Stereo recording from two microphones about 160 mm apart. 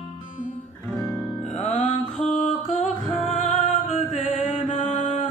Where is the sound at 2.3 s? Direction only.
50° left (ahead or behind).